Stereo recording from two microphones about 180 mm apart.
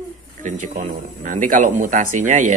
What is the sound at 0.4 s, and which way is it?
A man's voice, 45° right (ahead or behind).